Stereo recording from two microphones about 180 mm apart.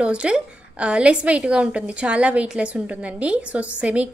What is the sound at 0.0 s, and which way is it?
A woman's voice, 5° right (ahead or behind).